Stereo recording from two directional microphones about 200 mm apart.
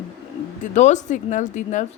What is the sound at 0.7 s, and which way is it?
A woman's voice, 35° left (ahead or behind).